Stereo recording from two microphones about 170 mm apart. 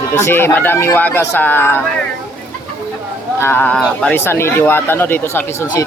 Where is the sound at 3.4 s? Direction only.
10° left (ahead or behind).